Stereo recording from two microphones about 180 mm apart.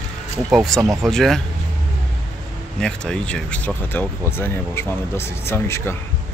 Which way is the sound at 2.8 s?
5° left (ahead or behind).